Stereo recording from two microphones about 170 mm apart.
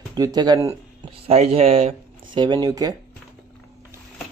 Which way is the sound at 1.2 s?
35° right (ahead or behind).